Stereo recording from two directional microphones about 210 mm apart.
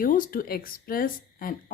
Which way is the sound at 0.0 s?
40° left (ahead or behind).